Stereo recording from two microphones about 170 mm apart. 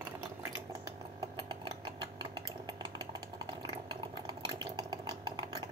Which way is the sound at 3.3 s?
30° right (ahead or behind).